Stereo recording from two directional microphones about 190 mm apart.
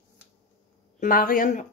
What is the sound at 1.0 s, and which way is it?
Speech, 50° left (ahead or behind).